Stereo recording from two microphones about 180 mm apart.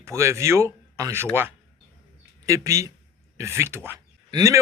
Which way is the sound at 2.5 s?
15° right (ahead or behind).